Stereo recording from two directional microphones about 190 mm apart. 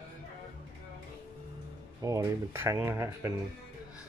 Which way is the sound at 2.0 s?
15° right (ahead or behind).